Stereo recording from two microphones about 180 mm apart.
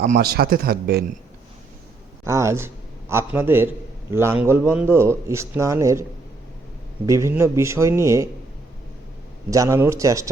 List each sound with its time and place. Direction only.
0.0 s speech: 55° right (ahead or behind)
2.2 s a man's voice: 15° right (ahead or behind)
9.5 s speech: 15° right (ahead or behind)